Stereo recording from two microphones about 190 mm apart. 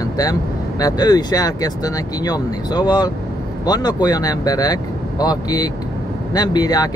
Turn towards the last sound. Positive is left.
turn(degrees=20)  # may be behind; listen again after turning